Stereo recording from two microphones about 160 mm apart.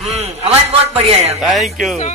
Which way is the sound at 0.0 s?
45° right (ahead or behind).